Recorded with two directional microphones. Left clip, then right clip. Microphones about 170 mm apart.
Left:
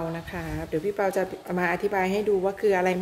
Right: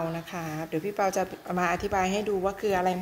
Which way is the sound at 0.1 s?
5° left (ahead or behind).